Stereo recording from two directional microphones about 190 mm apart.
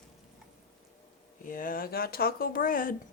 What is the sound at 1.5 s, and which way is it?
Speech, 45° left (ahead or behind).